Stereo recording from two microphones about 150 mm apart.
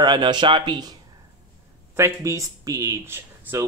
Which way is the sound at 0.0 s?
30° right (ahead or behind).